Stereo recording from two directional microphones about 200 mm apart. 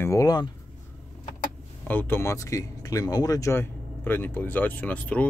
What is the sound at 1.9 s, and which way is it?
Speech, 10° left (ahead or behind).